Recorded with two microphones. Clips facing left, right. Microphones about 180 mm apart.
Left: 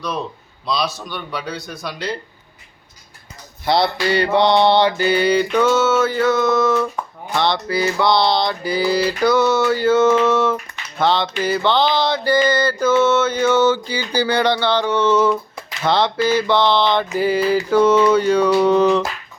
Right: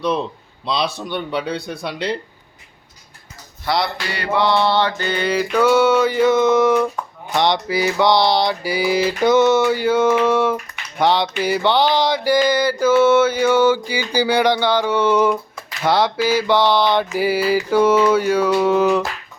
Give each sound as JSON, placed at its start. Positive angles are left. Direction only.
{"t": 0.6, "sound": "a man's voice", "side_deg": -25}
{"t": 3.7, "sound": "mantra", "side_deg": 25}